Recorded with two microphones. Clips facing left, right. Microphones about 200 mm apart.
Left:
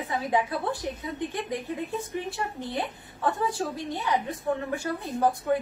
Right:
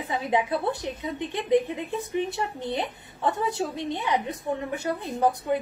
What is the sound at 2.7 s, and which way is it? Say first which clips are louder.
A woman's voice: right 1 dB; 20° right (ahead or behind).